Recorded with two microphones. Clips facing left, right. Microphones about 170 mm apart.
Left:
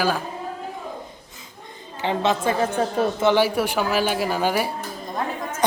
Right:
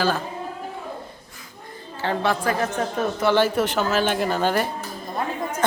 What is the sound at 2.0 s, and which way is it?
A woman's voice, 20° left (ahead or behind).